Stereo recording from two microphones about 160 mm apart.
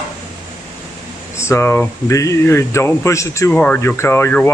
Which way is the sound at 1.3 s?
15° left (ahead or behind).